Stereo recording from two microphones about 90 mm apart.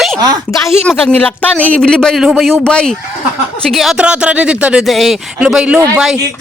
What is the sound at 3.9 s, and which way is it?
Speech, 10° right (ahead or behind).